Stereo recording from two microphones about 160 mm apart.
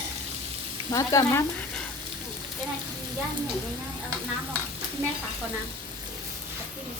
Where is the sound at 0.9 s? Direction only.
20° left (ahead or behind).